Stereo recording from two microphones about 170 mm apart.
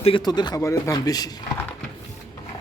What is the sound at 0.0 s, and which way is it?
Speech, 30° left (ahead or behind).